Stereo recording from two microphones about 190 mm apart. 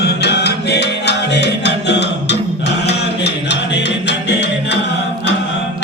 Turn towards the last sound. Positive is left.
turn(degrees=65)  # may be behind; listen again after turning